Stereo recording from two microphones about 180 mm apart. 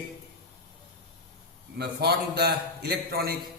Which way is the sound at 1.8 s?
65° right (ahead or behind).